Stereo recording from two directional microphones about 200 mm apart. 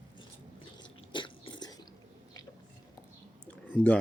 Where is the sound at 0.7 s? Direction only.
25° left (ahead or behind).